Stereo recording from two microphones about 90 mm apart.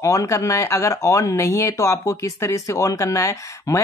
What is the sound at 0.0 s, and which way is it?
Speech, 35° left (ahead or behind).